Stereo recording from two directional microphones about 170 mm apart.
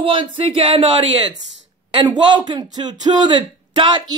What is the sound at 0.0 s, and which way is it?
Speech, 30° right (ahead or behind).